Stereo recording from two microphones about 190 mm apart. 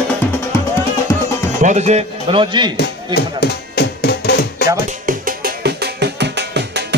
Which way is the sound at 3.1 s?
60° left (ahead or behind).